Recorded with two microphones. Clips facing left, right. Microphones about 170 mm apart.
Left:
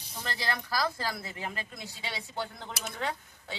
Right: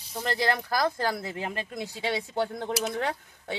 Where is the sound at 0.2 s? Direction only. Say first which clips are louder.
Right 8 dB; 50° right (ahead or behind).